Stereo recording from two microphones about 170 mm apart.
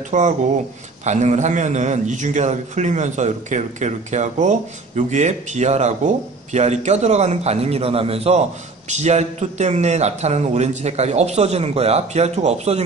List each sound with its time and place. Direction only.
0.1 s a man's voice: 45° right (ahead or behind)